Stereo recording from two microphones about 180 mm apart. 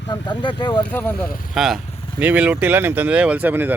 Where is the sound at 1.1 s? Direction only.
55° left (ahead or behind).